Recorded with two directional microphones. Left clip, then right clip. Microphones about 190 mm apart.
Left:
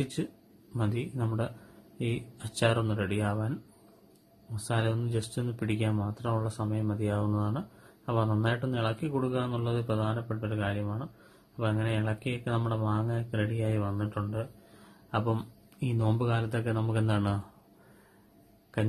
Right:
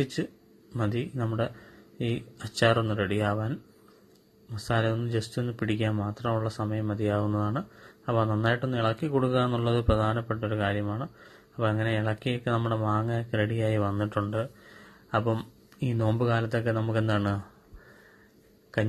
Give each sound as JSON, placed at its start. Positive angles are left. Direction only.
{"t": 0.0, "sound": "speech", "side_deg": -15}
{"t": 4.6, "sound": "speech", "side_deg": -15}